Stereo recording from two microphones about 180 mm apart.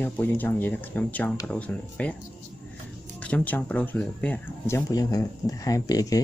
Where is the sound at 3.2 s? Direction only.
5° left (ahead or behind).